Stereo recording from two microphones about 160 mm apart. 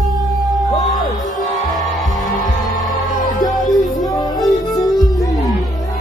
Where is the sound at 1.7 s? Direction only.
Centre (ahead or behind).